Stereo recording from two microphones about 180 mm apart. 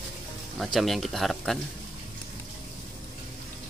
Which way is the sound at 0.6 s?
Centre (ahead or behind).